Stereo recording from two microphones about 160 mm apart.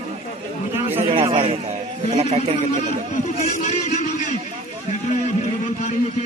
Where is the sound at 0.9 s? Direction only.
35° right (ahead or behind).